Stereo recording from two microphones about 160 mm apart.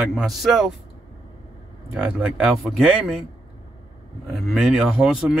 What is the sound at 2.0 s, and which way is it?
Speech, 5° right (ahead or behind).